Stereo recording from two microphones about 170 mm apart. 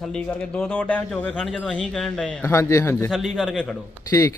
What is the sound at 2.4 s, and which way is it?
Speech, 15° left (ahead or behind).